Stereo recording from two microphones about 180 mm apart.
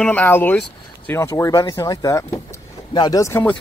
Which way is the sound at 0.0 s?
10° left (ahead or behind).